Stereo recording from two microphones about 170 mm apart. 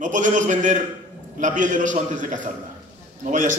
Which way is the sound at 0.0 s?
50° right (ahead or behind).